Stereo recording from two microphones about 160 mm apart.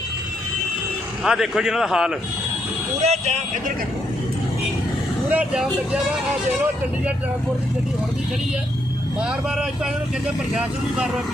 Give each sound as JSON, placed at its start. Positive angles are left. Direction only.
{"t": 1.2, "sound": "a man's voice", "side_deg": -5}
{"t": 3.0, "sound": "speech", "side_deg": -40}
{"t": 5.3, "sound": "speech", "side_deg": -10}
{"t": 10.5, "sound": "a man's voice", "side_deg": -5}